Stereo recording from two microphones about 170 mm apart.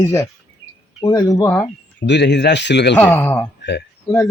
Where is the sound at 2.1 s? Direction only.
85° left.